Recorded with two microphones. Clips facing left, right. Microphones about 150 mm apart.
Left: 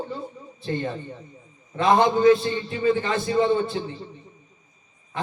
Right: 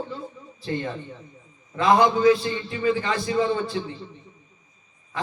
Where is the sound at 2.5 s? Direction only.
40° left (ahead or behind).